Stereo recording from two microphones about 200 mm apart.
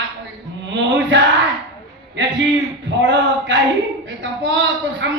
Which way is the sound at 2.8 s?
65° right (ahead or behind).